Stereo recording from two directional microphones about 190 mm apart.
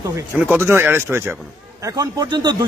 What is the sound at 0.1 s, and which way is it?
A man's voice, 10° right (ahead or behind).